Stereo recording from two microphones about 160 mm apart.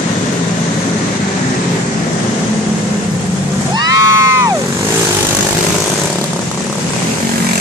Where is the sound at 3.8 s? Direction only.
20° right (ahead or behind).